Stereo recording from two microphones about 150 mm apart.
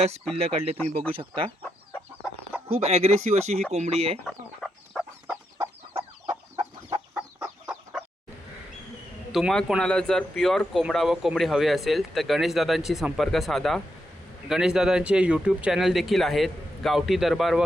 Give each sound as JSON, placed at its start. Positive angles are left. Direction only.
{"t": 0.3, "sound": "speech", "side_deg": -45}
{"t": 2.6, "sound": "speech", "side_deg": -45}
{"t": 4.3, "sound": "chicken", "side_deg": 0}
{"t": 5.5, "sound": "chicken", "side_deg": -20}
{"t": 9.3, "sound": "speech", "side_deg": 0}